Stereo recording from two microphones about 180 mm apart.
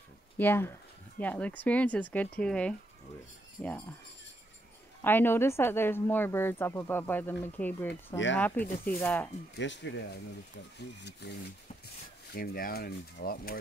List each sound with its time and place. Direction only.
0.4 s a woman's voice: 10° left (ahead or behind)
5.0 s a woman's voice: 10° left (ahead or behind)
9.6 s speech: 90° left; by 11.3 s 65° left (ahead or behind)
12.4 s speech: 55° left (ahead or behind)